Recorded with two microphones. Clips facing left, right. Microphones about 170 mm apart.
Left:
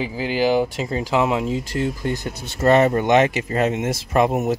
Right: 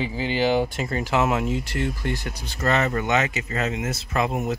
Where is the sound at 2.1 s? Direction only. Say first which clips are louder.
Left 3 dB; 20° left (ahead or behind).